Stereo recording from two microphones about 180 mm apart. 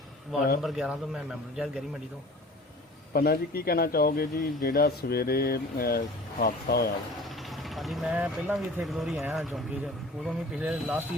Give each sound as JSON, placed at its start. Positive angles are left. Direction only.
{"t": 0.6, "sound": "speech", "side_deg": -5}
{"t": 3.1, "sound": "a man's voice", "side_deg": 60}
{"t": 7.5, "sound": "speech", "side_deg": 0}